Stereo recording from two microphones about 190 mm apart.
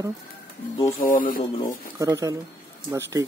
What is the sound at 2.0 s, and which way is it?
Speech, 15° right (ahead or behind).